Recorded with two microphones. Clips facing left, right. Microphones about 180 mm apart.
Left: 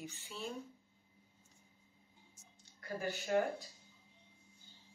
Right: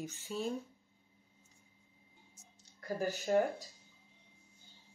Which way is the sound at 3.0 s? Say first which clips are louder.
Right 3 dB; 40° right (ahead or behind).